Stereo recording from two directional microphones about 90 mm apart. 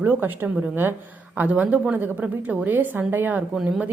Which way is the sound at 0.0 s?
25° right (ahead or behind).